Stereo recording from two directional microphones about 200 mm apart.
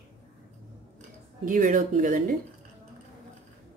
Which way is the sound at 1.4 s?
40° right (ahead or behind).